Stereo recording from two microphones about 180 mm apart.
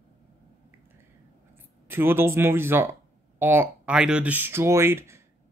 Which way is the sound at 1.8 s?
10° right (ahead or behind).